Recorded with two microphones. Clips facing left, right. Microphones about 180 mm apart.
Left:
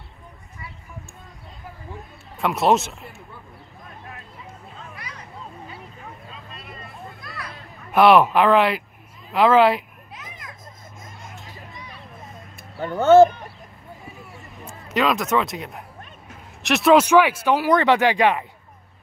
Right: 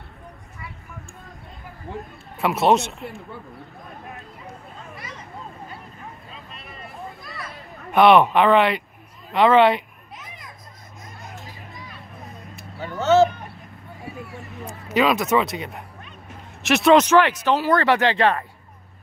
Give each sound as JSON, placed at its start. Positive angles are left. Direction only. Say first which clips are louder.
{"t": 2.3, "sound": "speech", "louder": "right 1 dB", "side_deg": 0}
{"t": 4.9, "sound": "a sound", "louder": "right 2 dB", "side_deg": 0}
{"t": 7.2, "sound": "children playing", "louder": "even", "side_deg": 0}
{"t": 11.2, "sound": "vehicle", "louder": "right 2 dB", "side_deg": 0}
{"t": 12.8, "sound": "speech", "louder": "left 4 dB", "side_deg": 55}
{"t": 14.9, "sound": "speech", "louder": "right 2 dB", "side_deg": 0}